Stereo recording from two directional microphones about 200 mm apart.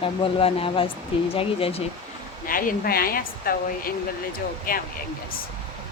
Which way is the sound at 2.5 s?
45° left (ahead or behind).